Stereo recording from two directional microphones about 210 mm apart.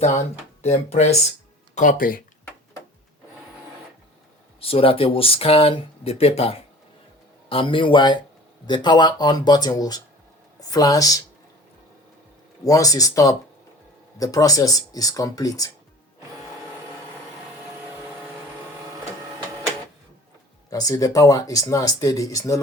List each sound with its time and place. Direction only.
0.6 s speech: 30° left (ahead or behind)
4.6 s speech: 25° left (ahead or behind)
12.6 s speech: 15° left (ahead or behind)
20.7 s speech: 15° left (ahead or behind)